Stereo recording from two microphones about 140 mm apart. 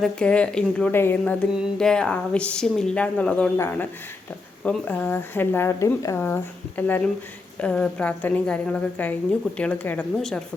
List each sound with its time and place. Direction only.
0.0 s a woman's voice: 5° left (ahead or behind)